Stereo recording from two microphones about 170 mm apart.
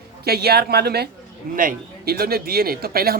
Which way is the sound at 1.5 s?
55° right (ahead or behind).